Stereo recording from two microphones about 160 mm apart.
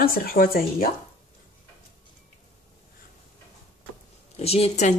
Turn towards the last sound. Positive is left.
turn(degrees=45)  # may be behind; listen again after turning